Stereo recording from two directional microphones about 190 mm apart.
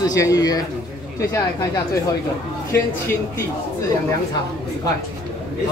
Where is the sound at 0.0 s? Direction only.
15° left (ahead or behind).